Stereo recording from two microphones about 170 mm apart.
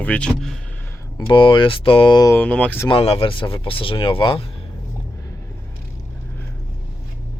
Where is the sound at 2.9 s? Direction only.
35° left (ahead or behind).